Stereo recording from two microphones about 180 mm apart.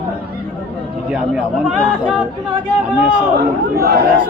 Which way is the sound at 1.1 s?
5° right (ahead or behind).